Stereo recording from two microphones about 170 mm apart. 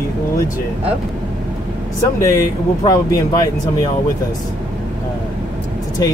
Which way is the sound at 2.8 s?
20° left (ahead or behind).